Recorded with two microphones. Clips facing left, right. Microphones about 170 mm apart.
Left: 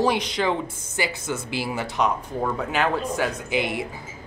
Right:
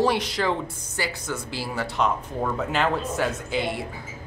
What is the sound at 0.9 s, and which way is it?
Speech, 20° left (ahead or behind).